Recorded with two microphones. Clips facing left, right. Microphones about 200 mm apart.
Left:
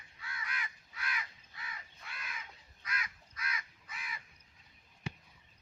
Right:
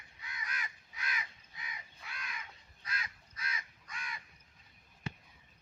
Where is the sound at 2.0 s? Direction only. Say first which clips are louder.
Right 1 dB; centre (ahead or behind).